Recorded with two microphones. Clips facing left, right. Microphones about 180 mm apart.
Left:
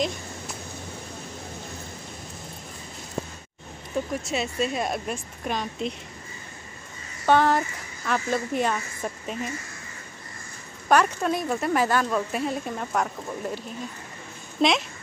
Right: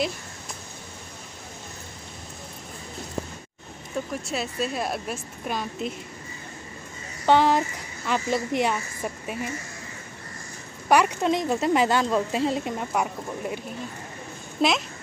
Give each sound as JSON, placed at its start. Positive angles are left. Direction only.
{"t": 3.9, "sound": "a woman's voice", "side_deg": 0}
{"t": 7.2, "sound": "a woman's voice", "side_deg": -15}
{"t": 10.9, "sound": "speech", "side_deg": -15}
{"t": 14.6, "sound": "a woman's voice", "side_deg": -5}